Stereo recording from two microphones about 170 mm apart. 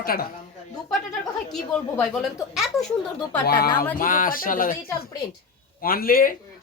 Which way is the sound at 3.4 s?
65° left (ahead or behind).